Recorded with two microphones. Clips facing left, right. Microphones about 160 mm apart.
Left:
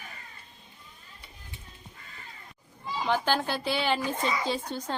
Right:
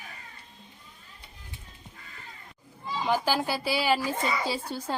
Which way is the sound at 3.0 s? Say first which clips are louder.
Right 1 dB; 5° right (ahead or behind).